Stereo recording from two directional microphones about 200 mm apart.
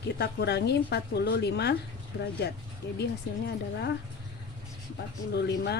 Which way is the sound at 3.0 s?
55° left (ahead or behind).